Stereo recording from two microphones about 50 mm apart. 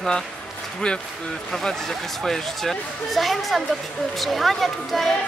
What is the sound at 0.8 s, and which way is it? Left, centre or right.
Speech, centre.